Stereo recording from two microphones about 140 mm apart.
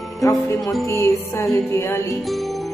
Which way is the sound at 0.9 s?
20° left (ahead or behind).